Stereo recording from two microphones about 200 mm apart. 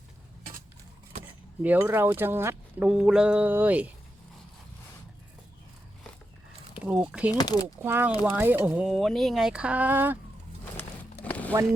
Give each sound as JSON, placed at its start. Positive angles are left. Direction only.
{"t": 1.6, "sound": "speech", "side_deg": -10}
{"t": 6.7, "sound": "a sound", "side_deg": -5}
{"t": 7.1, "sound": "speech", "side_deg": -5}
{"t": 7.3, "sound": "speech", "side_deg": 20}
{"t": 7.8, "sound": "speech", "side_deg": -10}
{"t": 10.8, "sound": "a sound", "side_deg": 10}